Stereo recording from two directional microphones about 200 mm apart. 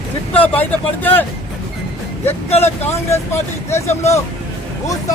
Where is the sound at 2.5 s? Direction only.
30° left (ahead or behind).